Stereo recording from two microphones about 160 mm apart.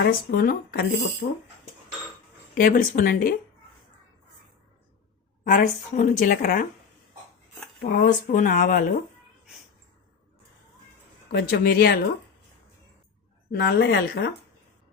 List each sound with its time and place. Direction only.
0.0 s speech: 65° left (ahead or behind)
2.6 s a woman's voice: 60° left (ahead or behind)
5.5 s a woman's voice: 55° left (ahead or behind)
7.8 s a woman's voice: 55° left (ahead or behind)
11.3 s speech: 75° left (ahead or behind)
13.5 s speech: 90° left